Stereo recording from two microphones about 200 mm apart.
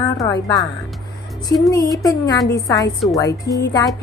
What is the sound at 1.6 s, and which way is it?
A woman's voice, 15° left (ahead or behind).